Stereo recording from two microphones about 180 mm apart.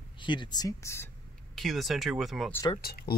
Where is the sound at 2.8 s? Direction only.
55° left (ahead or behind).